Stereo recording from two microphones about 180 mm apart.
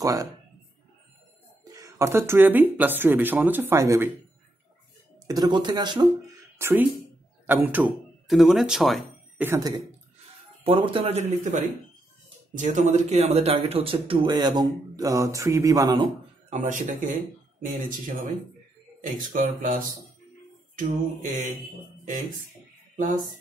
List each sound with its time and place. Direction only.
0.0 s speech: 20° right (ahead or behind)
1.7 s speech: 20° right (ahead or behind)
5.2 s speech: 20° right (ahead or behind)
6.6 s speech: 10° right (ahead or behind)
9.4 s speech: 15° right (ahead or behind)
10.6 s speech: 30° right (ahead or behind)
12.5 s speech: 45° right (ahead or behind); by 16.1 s 20° right (ahead or behind)
16.4 s speech: 45° right (ahead or behind)
22.9 s speech: 50° right (ahead or behind)